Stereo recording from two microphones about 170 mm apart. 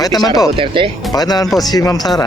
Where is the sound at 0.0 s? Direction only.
20° left (ahead or behind).